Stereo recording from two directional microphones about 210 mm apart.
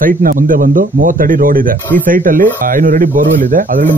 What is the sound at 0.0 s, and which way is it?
Speech, 40° right (ahead or behind).